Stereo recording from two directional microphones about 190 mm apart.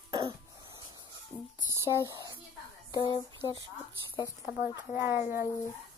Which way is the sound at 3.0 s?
25° left (ahead or behind).